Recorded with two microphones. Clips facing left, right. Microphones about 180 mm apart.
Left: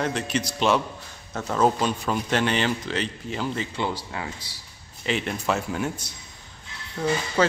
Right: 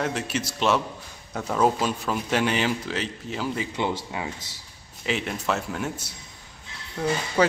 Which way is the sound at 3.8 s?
15° right (ahead or behind).